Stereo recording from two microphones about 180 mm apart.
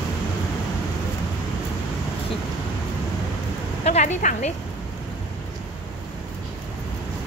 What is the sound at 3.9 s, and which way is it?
Speech, 40° left (ahead or behind).